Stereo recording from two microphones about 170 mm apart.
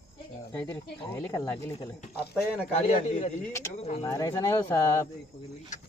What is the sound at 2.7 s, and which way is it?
A man's voice, 45° left (ahead or behind).